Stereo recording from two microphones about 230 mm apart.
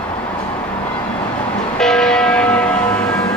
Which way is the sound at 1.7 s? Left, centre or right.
Centre.